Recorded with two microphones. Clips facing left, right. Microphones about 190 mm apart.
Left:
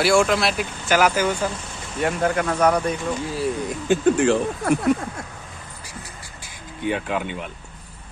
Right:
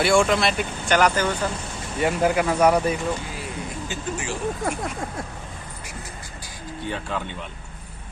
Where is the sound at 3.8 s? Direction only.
60° left (ahead or behind).